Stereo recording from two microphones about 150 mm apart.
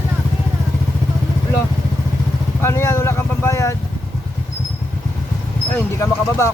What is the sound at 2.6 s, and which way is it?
Vehicle, 15° left (ahead or behind).